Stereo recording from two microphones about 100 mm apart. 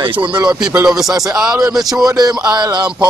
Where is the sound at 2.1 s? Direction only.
40° right (ahead or behind).